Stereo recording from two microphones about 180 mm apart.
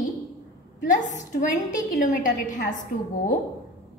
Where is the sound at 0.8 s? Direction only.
45° left (ahead or behind).